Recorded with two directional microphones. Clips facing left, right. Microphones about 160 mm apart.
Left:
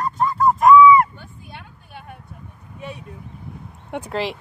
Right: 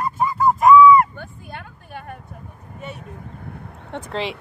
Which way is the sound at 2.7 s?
Centre (ahead or behind).